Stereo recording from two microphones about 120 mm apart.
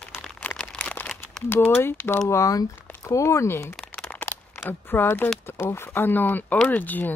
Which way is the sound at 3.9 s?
10° left (ahead or behind).